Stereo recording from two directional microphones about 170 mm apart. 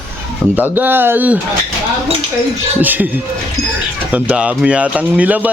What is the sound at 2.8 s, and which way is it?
Speech, 10° right (ahead or behind).